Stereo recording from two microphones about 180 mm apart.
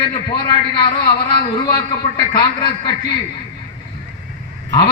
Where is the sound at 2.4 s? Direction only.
25° left (ahead or behind).